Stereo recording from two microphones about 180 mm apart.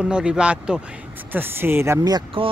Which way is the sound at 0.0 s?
5° right (ahead or behind).